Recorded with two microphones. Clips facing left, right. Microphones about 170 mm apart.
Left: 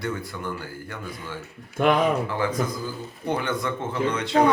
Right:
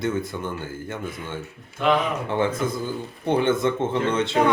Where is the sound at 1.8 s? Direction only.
50° left (ahead or behind).